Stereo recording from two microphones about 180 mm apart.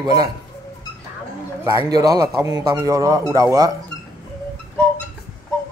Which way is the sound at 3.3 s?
20° right (ahead or behind).